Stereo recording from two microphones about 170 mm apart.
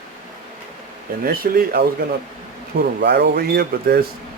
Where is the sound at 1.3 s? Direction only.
65° right (ahead or behind).